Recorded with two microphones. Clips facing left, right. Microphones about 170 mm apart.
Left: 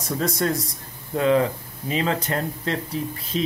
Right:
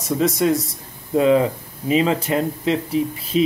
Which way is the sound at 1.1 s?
15° right (ahead or behind).